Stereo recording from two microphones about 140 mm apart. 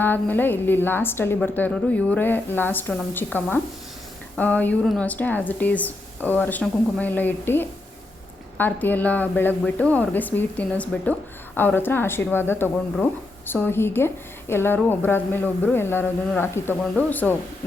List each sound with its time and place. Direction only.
0.0 s speech: 15° left (ahead or behind)